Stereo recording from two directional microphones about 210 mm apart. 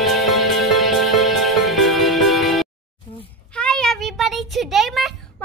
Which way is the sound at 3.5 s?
5° left (ahead or behind).